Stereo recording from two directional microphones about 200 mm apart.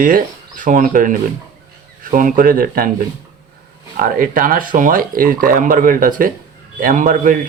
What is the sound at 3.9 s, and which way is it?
A man's voice, 45° right (ahead or behind).